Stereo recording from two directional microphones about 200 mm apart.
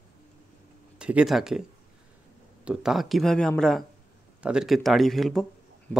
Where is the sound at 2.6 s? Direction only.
Centre (ahead or behind).